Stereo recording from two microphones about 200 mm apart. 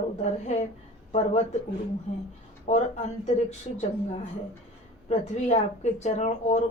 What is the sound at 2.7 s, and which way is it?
Speech, 35° left (ahead or behind).